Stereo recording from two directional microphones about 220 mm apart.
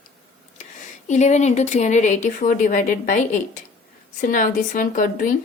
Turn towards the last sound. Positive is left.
turn(degrees=35)  # may be behind; listen again after turning